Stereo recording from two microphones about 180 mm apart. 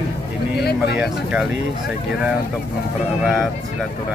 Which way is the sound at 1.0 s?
5° right (ahead or behind).